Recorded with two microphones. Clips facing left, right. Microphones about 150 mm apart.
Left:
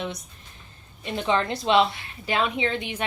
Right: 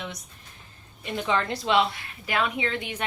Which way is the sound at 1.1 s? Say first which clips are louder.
Left 2 dB; 25° left (ahead or behind).